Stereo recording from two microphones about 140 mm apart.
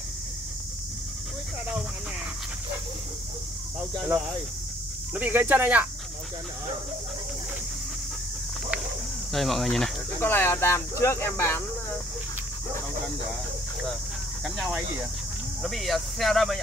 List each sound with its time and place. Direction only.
5.1 s speech: 10° right (ahead or behind)
9.3 s speech: centre (ahead or behind)
10.2 s speech: 15° left (ahead or behind)
14.4 s speech: 5° right (ahead or behind)